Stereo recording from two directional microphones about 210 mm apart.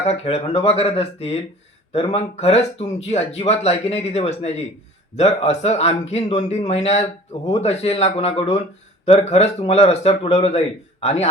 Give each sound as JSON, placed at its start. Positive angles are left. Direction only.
{"t": 0.0, "sound": "speech", "side_deg": 30}